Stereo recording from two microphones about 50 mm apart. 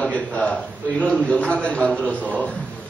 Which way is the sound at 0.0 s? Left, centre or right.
Left.